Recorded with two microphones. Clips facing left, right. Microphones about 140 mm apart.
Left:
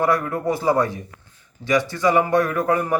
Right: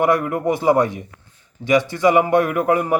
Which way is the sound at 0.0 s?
20° right (ahead or behind).